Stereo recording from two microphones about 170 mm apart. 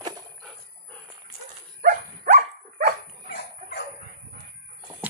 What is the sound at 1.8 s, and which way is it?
Dog, 45° right (ahead or behind).